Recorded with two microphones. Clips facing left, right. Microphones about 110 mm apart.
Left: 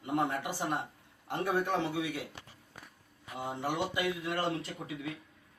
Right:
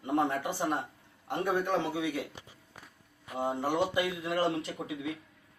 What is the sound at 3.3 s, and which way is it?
A man's voice, 25° right (ahead or behind).